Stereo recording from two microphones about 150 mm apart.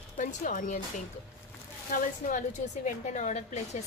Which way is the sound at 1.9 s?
65° left (ahead or behind).